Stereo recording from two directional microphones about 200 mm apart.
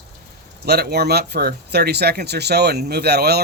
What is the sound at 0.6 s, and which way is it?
Speech, 55° right (ahead or behind).